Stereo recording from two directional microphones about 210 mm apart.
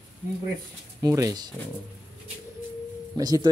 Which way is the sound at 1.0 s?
15° right (ahead or behind).